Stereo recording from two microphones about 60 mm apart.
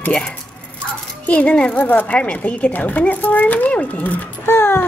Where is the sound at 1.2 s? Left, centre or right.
Left.